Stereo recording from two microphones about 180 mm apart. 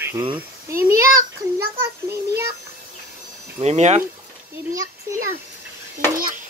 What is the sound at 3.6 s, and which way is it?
Speech, 40° right (ahead or behind).